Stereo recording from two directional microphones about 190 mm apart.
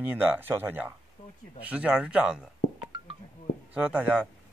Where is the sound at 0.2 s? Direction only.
10° right (ahead or behind).